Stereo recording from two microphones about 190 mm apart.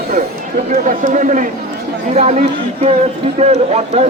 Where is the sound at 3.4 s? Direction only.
35° right (ahead or behind).